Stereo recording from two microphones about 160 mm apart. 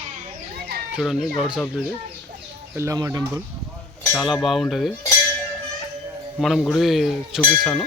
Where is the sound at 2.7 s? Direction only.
20° right (ahead or behind).